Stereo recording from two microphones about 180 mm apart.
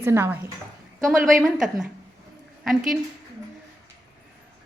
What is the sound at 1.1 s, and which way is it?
Speech, 50° right (ahead or behind).